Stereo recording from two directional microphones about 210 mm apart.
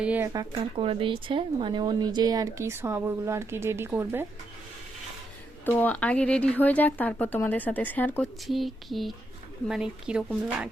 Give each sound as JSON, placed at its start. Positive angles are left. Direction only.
{"t": 0.0, "sound": "speech", "side_deg": -5}
{"t": 0.3, "sound": "speech", "side_deg": -25}
{"t": 5.6, "sound": "speech", "side_deg": 10}